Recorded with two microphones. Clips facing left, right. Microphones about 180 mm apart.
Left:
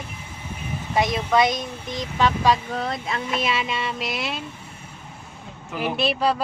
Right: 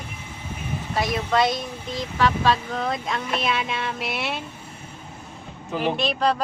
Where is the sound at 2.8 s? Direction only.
Centre (ahead or behind).